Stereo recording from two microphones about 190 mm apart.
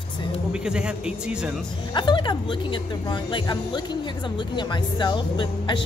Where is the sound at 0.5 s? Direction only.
5° right (ahead or behind).